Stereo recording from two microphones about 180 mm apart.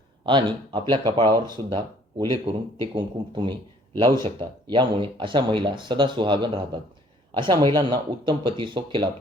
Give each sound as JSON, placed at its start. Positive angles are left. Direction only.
{"t": 0.3, "sound": "a man's voice", "side_deg": -25}